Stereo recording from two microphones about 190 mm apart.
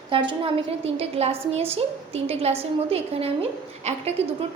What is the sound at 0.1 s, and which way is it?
A woman's voice, 25° right (ahead or behind).